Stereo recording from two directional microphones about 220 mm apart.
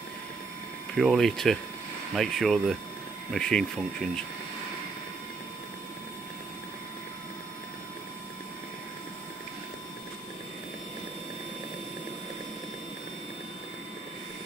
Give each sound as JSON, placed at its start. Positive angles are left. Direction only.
{"t": 0.9, "sound": "speech", "side_deg": 0}